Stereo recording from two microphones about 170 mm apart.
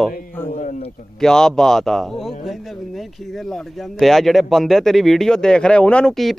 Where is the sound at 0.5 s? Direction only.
45° left (ahead or behind).